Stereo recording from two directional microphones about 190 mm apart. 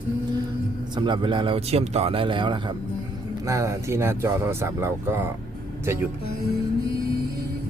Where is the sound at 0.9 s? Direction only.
25° right (ahead or behind).